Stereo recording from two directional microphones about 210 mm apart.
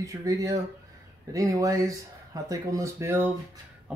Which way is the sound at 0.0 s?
15° right (ahead or behind).